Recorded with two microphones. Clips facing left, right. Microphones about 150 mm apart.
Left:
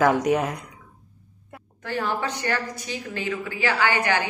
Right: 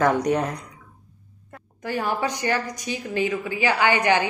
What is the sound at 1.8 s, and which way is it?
A woman's voice, 15° right (ahead or behind).